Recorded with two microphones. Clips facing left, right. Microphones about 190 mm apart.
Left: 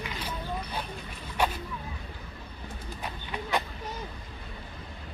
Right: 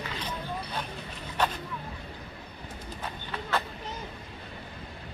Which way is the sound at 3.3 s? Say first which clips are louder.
Left 1 dB; 15° left (ahead or behind).